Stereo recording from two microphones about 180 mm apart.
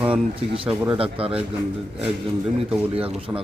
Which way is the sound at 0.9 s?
30° right (ahead or behind).